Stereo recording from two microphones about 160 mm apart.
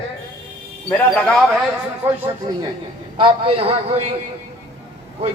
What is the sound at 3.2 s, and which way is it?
Speech, 35° right (ahead or behind).